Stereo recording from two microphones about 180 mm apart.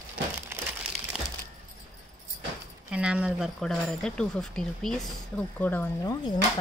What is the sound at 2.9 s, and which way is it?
A woman's voice, 5° right (ahead or behind).